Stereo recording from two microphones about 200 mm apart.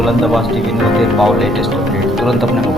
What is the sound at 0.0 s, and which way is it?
Speech, centre (ahead or behind).